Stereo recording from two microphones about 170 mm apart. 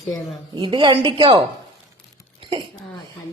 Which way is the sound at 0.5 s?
30° right (ahead or behind).